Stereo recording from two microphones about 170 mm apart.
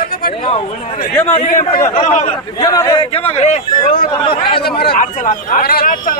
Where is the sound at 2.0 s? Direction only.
45° left (ahead or behind).